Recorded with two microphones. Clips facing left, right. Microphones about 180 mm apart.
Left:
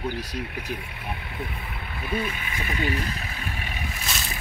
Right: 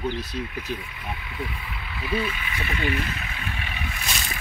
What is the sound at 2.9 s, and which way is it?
Vehicle, 35° left (ahead or behind).